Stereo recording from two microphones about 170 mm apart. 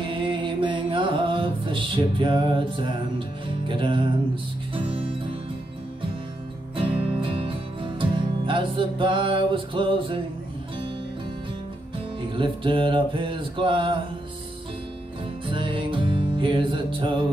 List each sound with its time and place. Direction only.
0.0 s music: 30° right (ahead or behind)
6.7 s music: 30° right (ahead or behind)
12.2 s music: 30° right (ahead or behind)
15.4 s music: 30° right (ahead or behind)